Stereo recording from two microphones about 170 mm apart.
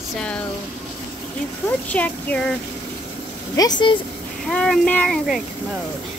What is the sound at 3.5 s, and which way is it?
Speech, 25° left (ahead or behind).